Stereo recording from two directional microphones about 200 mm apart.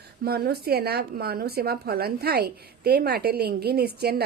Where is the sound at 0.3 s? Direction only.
50° right (ahead or behind).